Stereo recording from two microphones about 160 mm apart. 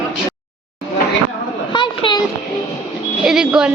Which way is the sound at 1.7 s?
30° left (ahead or behind).